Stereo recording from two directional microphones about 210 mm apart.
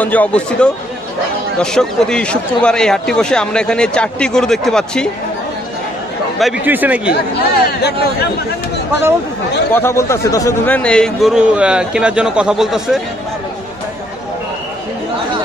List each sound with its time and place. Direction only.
0.0 s a man's voice: 5° left (ahead or behind)
6.4 s speech: 5° right (ahead or behind)
7.1 s speech: 50° left (ahead or behind)
9.8 s a man's voice: 15° left (ahead or behind); by 13.0 s centre (ahead or behind)